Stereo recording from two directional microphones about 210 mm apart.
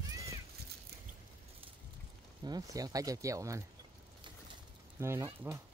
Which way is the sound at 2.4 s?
20° right (ahead or behind).